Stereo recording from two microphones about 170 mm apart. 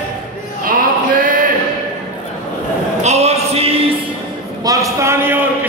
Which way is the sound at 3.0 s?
40° right (ahead or behind).